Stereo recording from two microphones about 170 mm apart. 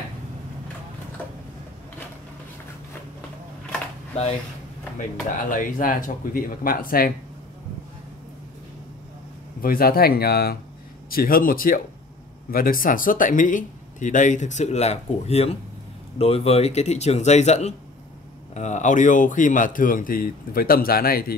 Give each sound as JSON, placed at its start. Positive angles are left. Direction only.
{"t": 4.9, "sound": "speech", "side_deg": 55}
{"t": 9.6, "sound": "speech", "side_deg": 60}